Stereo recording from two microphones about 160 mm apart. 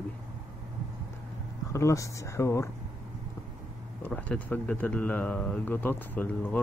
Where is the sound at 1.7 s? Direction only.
20° left (ahead or behind).